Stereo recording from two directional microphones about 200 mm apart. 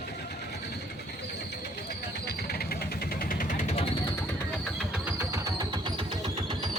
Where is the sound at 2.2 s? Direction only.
50° left (ahead or behind).